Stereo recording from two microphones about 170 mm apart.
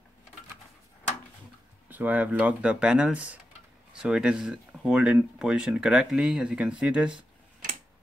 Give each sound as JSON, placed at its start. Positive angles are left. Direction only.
{"t": 1.9, "sound": "speech", "side_deg": -10}